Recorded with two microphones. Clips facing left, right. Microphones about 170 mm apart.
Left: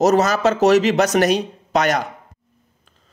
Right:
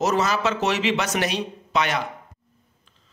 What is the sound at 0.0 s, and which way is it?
Speech, 40° left (ahead or behind).